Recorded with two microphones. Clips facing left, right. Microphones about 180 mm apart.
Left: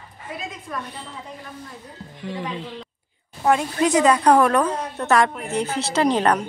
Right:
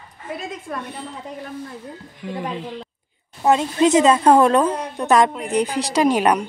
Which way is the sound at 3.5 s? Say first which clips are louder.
Right 3 dB; 25° right (ahead or behind).